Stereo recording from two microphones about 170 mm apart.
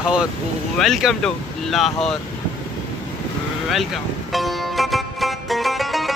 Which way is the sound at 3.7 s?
Centre (ahead or behind).